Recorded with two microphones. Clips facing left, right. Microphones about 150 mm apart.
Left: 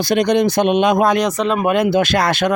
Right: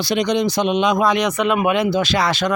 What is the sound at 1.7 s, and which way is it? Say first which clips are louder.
Speech: left 3 dB; 50° left (ahead or behind).